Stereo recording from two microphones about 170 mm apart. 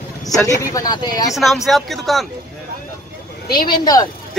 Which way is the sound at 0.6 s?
20° left (ahead or behind).